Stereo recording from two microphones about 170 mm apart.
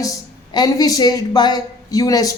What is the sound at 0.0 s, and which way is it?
Speech, 20° left (ahead or behind).